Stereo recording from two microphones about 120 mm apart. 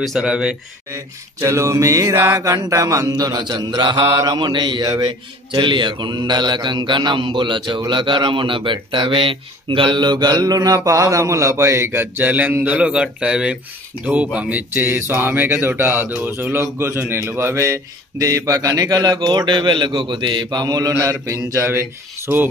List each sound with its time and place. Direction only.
0.0 s speech: 5° right (ahead or behind)
0.9 s mantra: 25° right (ahead or behind)
10.9 s speech: 30° right (ahead or behind)
16.7 s mantra: 20° right (ahead or behind)
21.0 s speech: 25° right (ahead or behind)